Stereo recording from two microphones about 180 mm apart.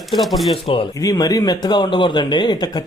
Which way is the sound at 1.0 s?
20° left (ahead or behind).